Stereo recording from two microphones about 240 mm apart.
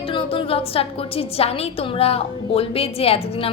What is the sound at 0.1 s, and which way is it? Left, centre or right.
A woman's voice, left.